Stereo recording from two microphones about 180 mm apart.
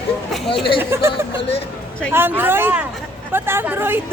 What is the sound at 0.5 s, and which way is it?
Speech, 30° left (ahead or behind).